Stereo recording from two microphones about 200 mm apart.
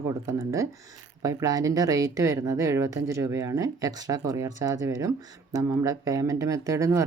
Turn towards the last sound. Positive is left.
turn(degrees=-15)  # may be behind; listen again after turning